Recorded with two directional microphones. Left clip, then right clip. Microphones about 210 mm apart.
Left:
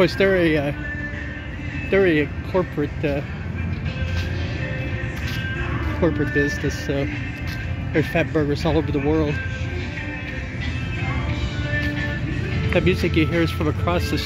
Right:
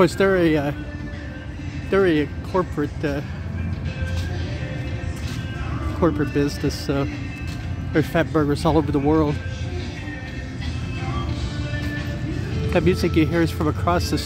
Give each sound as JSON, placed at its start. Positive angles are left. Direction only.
{"t": 0.0, "sound": "speech", "side_deg": -20}
{"t": 1.9, "sound": "speech", "side_deg": -10}
{"t": 5.9, "sound": "speech", "side_deg": -25}
{"t": 12.7, "sound": "speech", "side_deg": -15}